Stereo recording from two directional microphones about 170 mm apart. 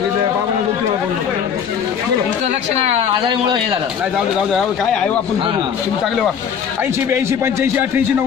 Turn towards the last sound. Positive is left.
turn(degrees=-15)  # may be behind; listen again after turning